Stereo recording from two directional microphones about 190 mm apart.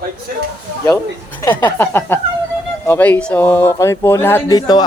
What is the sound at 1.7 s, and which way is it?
Speech, 10° left (ahead or behind).